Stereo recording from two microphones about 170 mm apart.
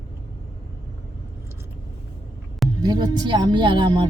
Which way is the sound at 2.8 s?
25° right (ahead or behind).